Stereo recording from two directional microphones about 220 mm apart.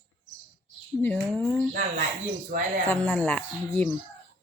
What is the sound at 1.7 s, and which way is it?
Speech, 40° right (ahead or behind).